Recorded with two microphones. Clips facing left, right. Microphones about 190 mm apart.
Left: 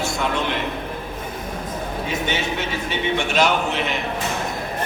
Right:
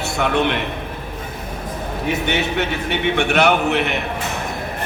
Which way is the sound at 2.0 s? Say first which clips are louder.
Right 5 dB; 65° right (ahead or behind).